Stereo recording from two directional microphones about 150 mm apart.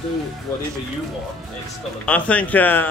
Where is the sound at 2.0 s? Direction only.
10° left (ahead or behind).